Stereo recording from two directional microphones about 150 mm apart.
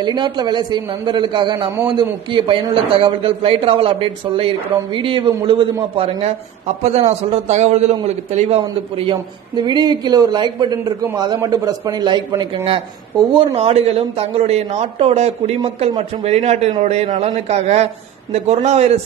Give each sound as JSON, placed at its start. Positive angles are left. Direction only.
{"t": 0.0, "sound": "a man's voice", "side_deg": -30}